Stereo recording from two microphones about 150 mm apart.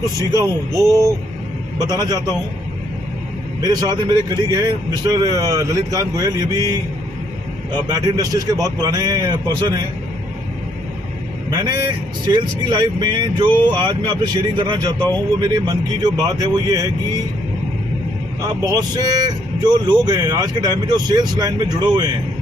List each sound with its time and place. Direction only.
0.3 s speech: 25° right (ahead or behind)
3.6 s speech: 25° right (ahead or behind)
12.3 s speech: 30° right (ahead or behind)
18.7 s speech: 25° right (ahead or behind)